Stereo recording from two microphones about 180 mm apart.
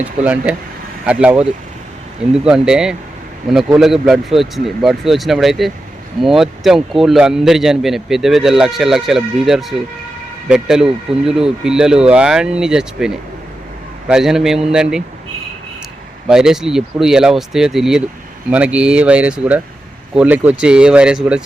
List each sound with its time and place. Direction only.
0.0 s a man's voice: 5° right (ahead or behind)
16.3 s a man's voice: 5° right (ahead or behind)